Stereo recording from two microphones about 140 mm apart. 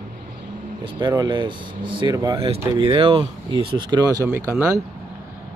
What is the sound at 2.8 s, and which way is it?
Speech, 40° right (ahead or behind).